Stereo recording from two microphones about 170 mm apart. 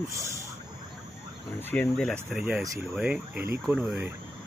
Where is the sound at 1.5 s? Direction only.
10° left (ahead or behind); by 4.1 s 10° right (ahead or behind).